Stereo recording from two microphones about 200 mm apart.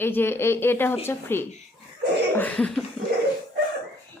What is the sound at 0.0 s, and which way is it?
Speech, 10° left (ahead or behind).